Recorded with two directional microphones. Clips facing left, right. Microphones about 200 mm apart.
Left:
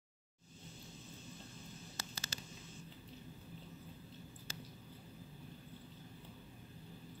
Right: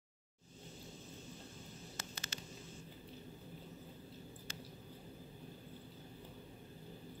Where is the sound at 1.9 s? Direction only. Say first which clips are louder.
Even; 35° left (ahead or behind).